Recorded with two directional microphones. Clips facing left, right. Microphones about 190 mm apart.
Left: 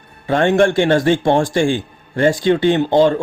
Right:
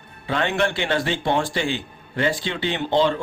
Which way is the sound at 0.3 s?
45° left (ahead or behind).